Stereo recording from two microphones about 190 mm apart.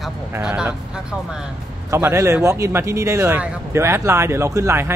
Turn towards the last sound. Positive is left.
turn(degrees=-15)  # may be behind; listen again after turning